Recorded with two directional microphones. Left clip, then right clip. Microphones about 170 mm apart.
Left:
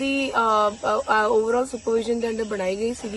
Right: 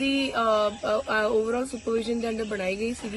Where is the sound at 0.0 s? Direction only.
15° left (ahead or behind).